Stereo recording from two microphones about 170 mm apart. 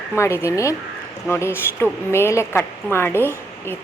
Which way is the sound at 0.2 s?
15° left (ahead or behind).